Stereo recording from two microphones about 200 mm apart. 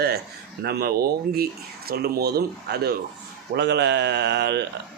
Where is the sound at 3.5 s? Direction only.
55° right (ahead or behind).